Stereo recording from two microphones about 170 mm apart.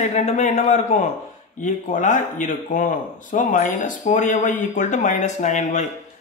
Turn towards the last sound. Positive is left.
turn(degrees=45)  # may be behind; listen again after turning